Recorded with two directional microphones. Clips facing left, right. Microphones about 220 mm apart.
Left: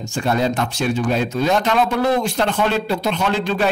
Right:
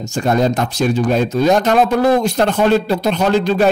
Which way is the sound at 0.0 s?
40° right (ahead or behind).